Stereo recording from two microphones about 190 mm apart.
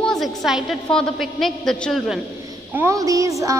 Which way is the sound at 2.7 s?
15° right (ahead or behind).